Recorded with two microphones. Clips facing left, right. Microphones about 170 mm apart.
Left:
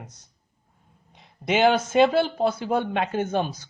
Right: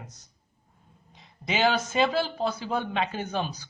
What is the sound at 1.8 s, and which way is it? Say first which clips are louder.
Speech: left 6 dB; 55° left (ahead or behind).